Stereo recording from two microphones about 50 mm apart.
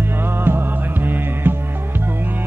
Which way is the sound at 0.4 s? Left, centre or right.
Right.